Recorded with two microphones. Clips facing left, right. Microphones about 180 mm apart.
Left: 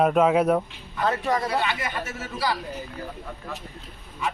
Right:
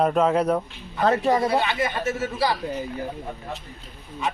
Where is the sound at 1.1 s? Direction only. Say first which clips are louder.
Right 5 dB; 30° right (ahead or behind).